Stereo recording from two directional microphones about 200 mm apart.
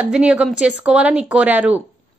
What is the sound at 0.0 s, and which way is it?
Speech, 5° right (ahead or behind).